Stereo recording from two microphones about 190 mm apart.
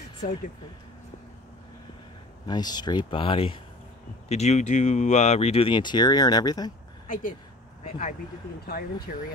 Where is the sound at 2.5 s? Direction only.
20° left (ahead or behind).